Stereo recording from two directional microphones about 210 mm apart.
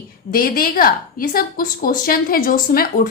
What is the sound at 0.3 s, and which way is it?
A woman's voice, 45° left (ahead or behind).